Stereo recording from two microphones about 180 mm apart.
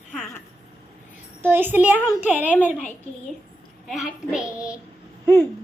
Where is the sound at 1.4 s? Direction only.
10° right (ahead or behind).